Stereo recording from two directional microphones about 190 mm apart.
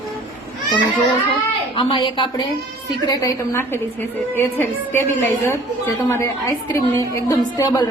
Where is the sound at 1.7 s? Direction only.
25° left (ahead or behind).